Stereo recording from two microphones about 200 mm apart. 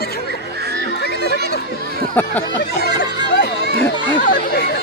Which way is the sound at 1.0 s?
55° left (ahead or behind).